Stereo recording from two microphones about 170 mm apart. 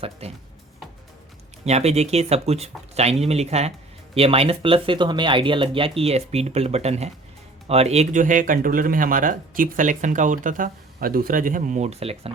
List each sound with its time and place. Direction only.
0.2 s speech: 35° right (ahead or behind)
1.6 s speech: 40° right (ahead or behind)